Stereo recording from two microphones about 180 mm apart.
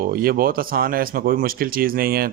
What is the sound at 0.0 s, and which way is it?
Speech, 55° right (ahead or behind).